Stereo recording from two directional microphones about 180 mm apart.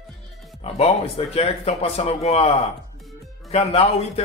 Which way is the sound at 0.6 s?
35° left (ahead or behind).